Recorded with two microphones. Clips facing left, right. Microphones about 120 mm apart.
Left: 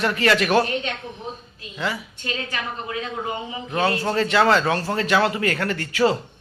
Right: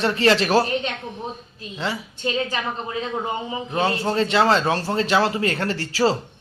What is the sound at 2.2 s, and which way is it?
Speech, 25° right (ahead or behind).